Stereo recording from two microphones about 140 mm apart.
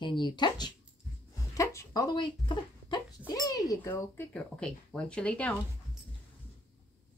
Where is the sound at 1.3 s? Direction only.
25° left (ahead or behind).